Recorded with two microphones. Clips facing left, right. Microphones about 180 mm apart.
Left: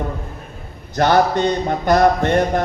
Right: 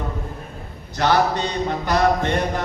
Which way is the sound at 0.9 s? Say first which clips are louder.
Left 4 dB; 50° left (ahead or behind).